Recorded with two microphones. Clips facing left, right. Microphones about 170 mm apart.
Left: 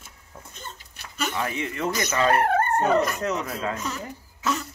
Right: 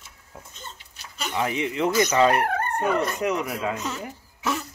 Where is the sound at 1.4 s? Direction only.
20° right (ahead or behind).